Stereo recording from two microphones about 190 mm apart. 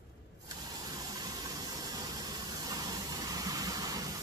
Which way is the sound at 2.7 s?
20° right (ahead or behind).